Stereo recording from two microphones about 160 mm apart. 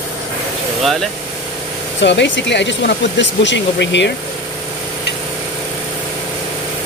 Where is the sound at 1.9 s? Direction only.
90° left.